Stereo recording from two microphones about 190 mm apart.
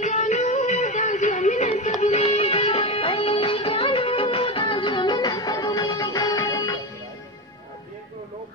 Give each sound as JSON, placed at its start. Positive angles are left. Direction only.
{"t": 0.0, "sound": "music", "side_deg": 40}